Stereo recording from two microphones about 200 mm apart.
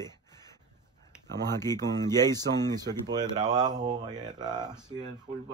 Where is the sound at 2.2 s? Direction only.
20° right (ahead or behind).